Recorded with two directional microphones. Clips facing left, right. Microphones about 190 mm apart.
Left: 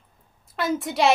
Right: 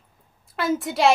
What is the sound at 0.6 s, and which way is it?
Speech, centre (ahead or behind).